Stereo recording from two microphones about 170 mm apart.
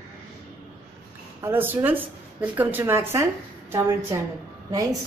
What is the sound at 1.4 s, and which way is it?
Speech, 10° right (ahead or behind).